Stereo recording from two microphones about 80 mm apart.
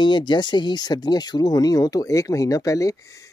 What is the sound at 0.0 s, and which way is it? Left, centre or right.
Speech, left.